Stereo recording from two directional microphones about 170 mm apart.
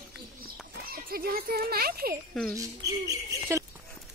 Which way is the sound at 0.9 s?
60° right (ahead or behind).